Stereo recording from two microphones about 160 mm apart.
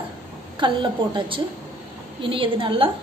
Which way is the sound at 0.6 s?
30° right (ahead or behind).